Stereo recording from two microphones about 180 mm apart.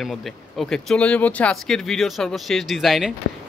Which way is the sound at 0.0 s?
Centre (ahead or behind).